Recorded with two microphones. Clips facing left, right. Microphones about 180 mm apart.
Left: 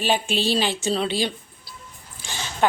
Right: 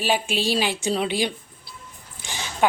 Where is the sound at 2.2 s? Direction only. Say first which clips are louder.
Even; 15° right (ahead or behind).